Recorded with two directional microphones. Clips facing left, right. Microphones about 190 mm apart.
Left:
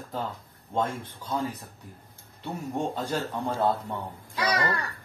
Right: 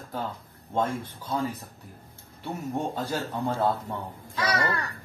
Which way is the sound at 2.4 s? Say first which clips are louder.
Even; 10° right (ahead or behind).